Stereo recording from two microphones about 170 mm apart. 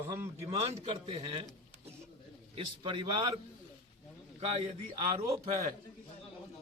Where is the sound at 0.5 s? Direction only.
35° right (ahead or behind).